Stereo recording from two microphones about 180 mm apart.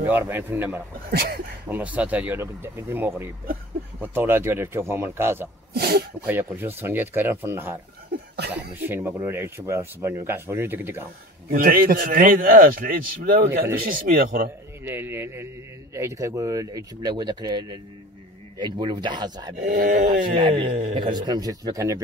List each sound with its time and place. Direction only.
0.0 s speech: 10° right (ahead or behind)
5.7 s speech: 60° right (ahead or behind)
6.2 s speech: 10° right (ahead or behind)
8.1 s cough: 65° right (ahead or behind)
8.7 s speech: 10° right (ahead or behind)
11.4 s a man's voice: 55° right (ahead or behind)
14.9 s speech: 10° right (ahead or behind)
19.6 s a man's voice: 45° right (ahead or behind)
20.3 s speech: 30° right (ahead or behind)
20.7 s speech: 40° right (ahead or behind)
21.0 s speech: 25° right (ahead or behind)